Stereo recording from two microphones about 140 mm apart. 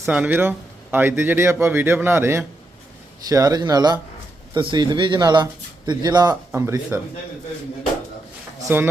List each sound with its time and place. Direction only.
0.0 s speech: 15° right (ahead or behind)
8.6 s speech: 15° right (ahead or behind)